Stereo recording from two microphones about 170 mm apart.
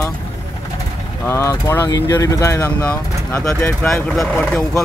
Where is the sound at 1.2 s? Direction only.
15° left (ahead or behind).